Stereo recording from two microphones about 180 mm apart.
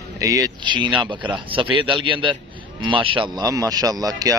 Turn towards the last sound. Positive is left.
turn(degrees=-20)  # may be behind; listen again after turning